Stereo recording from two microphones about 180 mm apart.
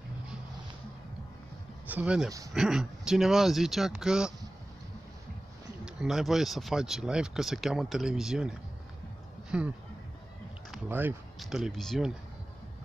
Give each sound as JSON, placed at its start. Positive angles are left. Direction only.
{"t": 1.9, "sound": "speech", "side_deg": -5}
{"t": 5.9, "sound": "speech", "side_deg": -5}
{"t": 10.7, "sound": "speech", "side_deg": -10}